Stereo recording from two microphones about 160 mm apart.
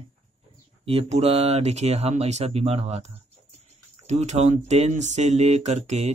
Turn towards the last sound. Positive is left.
turn(degrees=-45)  # may be behind; listen again after turning